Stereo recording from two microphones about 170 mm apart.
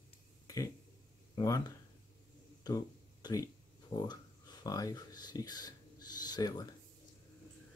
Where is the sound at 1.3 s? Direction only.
20° left (ahead or behind).